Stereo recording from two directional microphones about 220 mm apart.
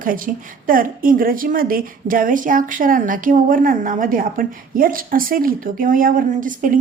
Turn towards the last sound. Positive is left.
turn(degrees=-35)  # may be behind; listen again after turning